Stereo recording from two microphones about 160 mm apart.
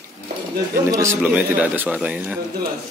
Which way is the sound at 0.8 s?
15° right (ahead or behind).